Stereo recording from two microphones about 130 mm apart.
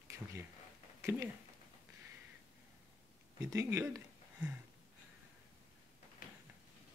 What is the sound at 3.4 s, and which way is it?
Speech, 25° right (ahead or behind).